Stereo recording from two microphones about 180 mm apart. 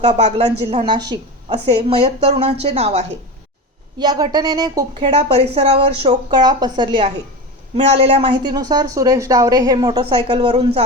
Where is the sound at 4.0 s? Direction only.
25° right (ahead or behind).